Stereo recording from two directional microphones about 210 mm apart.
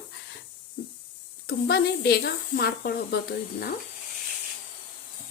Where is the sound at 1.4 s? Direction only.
50° left (ahead or behind).